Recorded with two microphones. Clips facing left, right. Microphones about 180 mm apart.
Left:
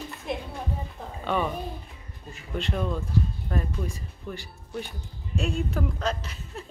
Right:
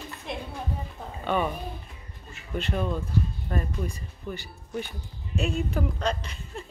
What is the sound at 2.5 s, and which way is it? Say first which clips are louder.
Speech: even; 5° right (ahead or behind).